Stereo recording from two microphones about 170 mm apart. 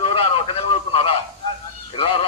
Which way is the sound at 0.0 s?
30° left (ahead or behind).